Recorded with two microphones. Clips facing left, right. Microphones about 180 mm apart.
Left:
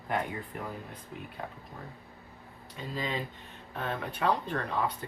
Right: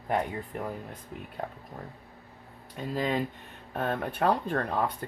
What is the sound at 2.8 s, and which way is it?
Speech, 50° right (ahead or behind).